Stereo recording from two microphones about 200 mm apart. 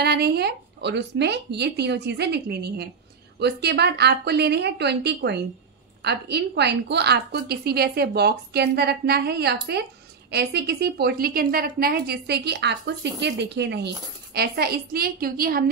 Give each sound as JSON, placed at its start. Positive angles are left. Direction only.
{"t": 0.0, "sound": "a woman's voice", "side_deg": -55}